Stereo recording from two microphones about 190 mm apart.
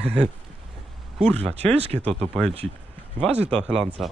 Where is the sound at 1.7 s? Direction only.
30° right (ahead or behind).